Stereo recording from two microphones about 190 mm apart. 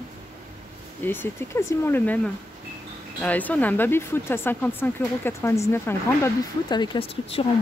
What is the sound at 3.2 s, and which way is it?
Speech, 10° left (ahead or behind).